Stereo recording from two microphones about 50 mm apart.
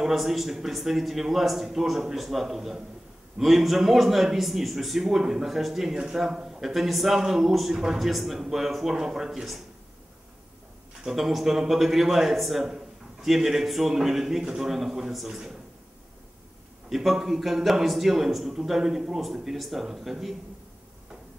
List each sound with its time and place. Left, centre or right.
0.0 s a man's voice: centre
11.1 s a man's voice: centre
16.9 s a man's voice: centre